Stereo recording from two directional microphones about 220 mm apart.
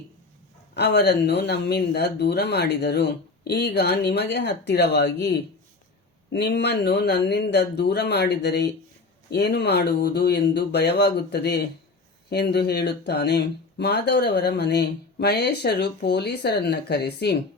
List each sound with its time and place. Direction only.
0.7 s speech: 50° left (ahead or behind)